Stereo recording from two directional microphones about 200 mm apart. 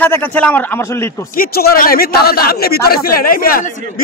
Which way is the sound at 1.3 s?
50° left (ahead or behind).